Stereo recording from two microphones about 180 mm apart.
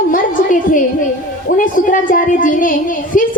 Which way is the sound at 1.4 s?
50° left (ahead or behind).